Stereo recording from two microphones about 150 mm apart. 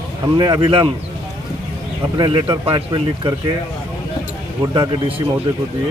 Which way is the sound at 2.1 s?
35° right (ahead or behind).